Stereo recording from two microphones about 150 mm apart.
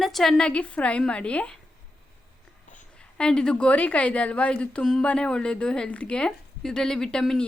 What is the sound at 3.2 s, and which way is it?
A woman's voice, 5° left (ahead or behind).